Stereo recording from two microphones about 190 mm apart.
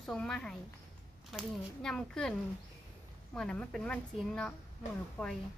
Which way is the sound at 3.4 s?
5° left (ahead or behind).